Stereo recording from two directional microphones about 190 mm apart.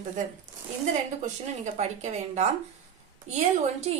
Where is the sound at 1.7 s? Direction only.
40° right (ahead or behind).